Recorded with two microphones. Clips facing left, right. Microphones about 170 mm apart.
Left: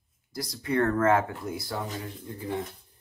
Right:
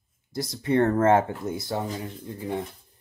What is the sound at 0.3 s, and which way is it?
Speech, 25° right (ahead or behind).